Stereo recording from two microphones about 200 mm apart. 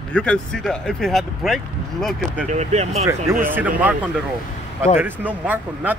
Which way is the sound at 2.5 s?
35° right (ahead or behind).